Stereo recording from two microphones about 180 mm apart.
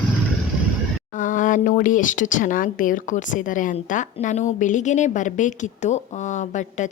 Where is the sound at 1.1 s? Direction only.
45° left (ahead or behind).